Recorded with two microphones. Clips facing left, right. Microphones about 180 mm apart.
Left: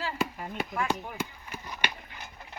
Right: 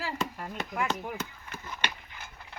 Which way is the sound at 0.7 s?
15° right (ahead or behind).